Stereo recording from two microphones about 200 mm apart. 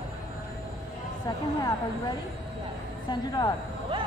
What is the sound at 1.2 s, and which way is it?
Speech, 20° left (ahead or behind).